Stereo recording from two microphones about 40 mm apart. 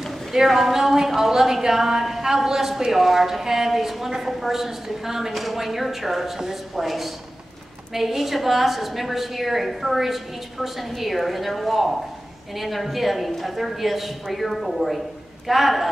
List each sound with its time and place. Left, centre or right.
0.0 s a woman's voice: centre